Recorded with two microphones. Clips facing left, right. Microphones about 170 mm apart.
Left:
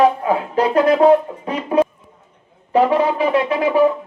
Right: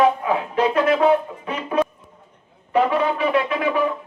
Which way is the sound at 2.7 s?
35° left (ahead or behind).